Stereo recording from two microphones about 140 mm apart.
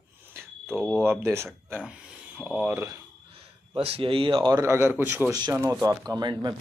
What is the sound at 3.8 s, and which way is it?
Speech, 45° right (ahead or behind).